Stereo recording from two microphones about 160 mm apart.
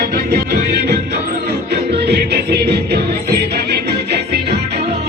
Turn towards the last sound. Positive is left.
turn(degrees=-90)